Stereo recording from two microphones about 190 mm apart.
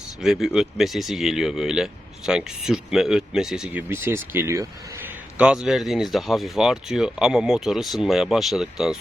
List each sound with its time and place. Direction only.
0.2 s speech: centre (ahead or behind)